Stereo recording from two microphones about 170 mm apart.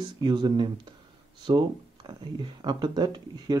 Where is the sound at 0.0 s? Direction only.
25° right (ahead or behind).